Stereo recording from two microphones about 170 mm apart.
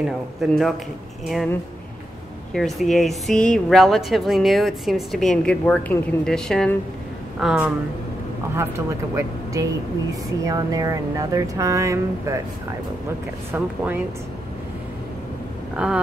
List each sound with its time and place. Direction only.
0.0 s speech: centre (ahead or behind)
2.5 s speech: centre (ahead or behind)
8.5 s speech: 15° right (ahead or behind)
13.5 s speech: 10° right (ahead or behind)
15.7 s vehicle: 5° right (ahead or behind)